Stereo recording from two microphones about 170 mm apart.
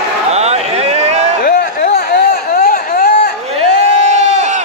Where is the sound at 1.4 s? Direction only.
65° left (ahead or behind).